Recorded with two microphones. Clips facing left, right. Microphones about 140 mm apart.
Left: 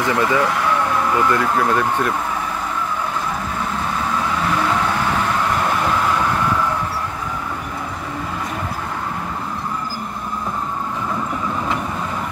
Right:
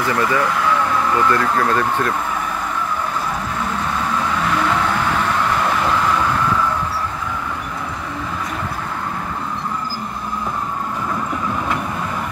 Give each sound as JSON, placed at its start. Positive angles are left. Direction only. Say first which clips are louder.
{"t": 0.0, "sound": "speech", "louder": "left 1 dB", "side_deg": 20}